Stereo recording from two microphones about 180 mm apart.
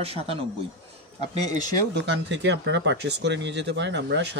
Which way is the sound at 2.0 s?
75° right (ahead or behind).